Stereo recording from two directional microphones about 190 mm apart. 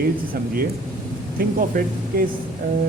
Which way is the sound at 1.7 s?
45° right (ahead or behind).